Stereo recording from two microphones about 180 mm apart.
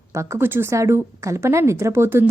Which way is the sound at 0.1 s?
15° right (ahead or behind).